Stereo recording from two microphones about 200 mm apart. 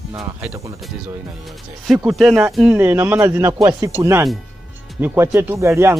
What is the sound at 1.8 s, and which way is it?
Speech, centre (ahead or behind).